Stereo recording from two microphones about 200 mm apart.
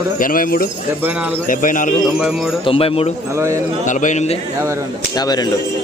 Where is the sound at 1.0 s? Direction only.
10° right (ahead or behind).